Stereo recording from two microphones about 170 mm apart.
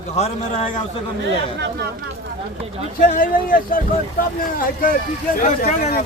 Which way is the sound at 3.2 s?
55° left (ahead or behind).